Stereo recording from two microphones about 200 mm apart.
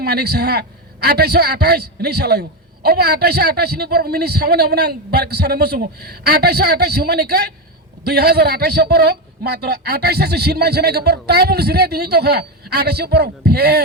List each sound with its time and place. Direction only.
0.0 s a man's voice: 50° right (ahead or behind)